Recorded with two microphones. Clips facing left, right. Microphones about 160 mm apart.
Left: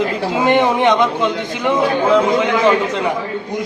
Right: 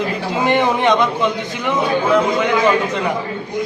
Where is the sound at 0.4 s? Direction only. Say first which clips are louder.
Left 2 dB; 15° left (ahead or behind).